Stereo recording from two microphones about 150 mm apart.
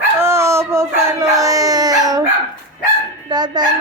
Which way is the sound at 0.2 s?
15° right (ahead or behind).